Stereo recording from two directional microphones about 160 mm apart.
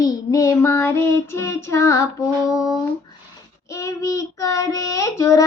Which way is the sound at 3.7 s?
20° left (ahead or behind).